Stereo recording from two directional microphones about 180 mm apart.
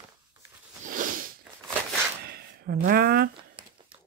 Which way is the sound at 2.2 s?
60° right (ahead or behind).